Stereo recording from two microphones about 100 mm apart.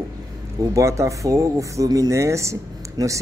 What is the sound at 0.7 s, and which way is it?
Speech, 30° right (ahead or behind).